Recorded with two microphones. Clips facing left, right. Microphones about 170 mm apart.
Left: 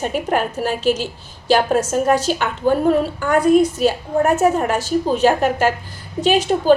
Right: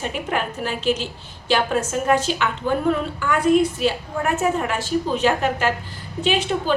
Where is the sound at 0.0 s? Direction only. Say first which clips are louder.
Left 5 dB; 45° left (ahead or behind).